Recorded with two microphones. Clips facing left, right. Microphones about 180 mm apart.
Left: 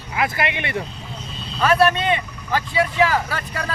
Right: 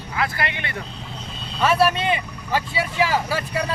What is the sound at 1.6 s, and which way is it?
Speech, 5° right (ahead or behind).